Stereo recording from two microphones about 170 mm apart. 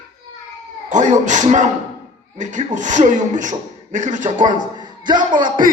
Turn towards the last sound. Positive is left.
turn(degrees=-25)  # may be behind; listen again after turning